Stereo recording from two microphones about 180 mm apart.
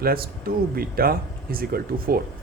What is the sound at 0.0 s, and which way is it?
Speech, 55° right (ahead or behind).